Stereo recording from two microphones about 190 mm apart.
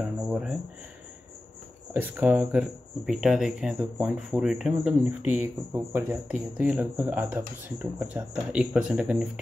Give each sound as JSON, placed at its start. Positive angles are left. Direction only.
{"t": 0.3, "sound": "speech", "side_deg": -5}
{"t": 2.0, "sound": "speech", "side_deg": -10}